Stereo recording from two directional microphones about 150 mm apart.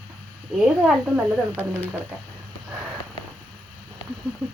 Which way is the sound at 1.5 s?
10° left (ahead or behind).